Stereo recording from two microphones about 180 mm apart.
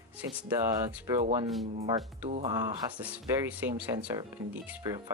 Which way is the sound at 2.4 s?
20° right (ahead or behind).